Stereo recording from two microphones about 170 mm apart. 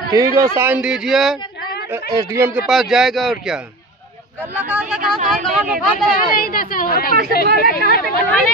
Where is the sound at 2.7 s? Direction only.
Centre (ahead or behind).